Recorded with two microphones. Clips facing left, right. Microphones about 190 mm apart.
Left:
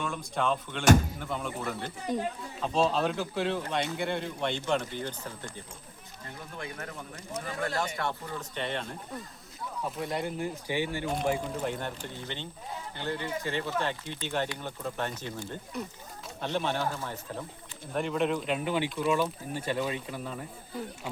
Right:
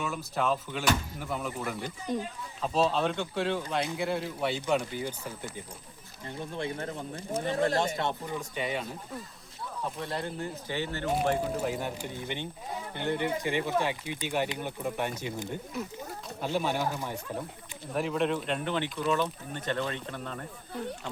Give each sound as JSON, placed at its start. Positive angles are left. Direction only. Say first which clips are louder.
{"t": 0.0, "sound": "speech", "louder": "even", "side_deg": -5}
{"t": 6.2, "sound": "speech", "louder": "right 6 dB", "side_deg": -30}
{"t": 8.4, "sound": "speech", "louder": "right 1 dB", "side_deg": -10}
{"t": 9.8, "sound": "speech", "louder": "left 2 dB", "side_deg": 10}
{"t": 11.4, "sound": "speech", "louder": "right 2 dB", "side_deg": -5}
{"t": 17.9, "sound": "speech", "louder": "even", "side_deg": 0}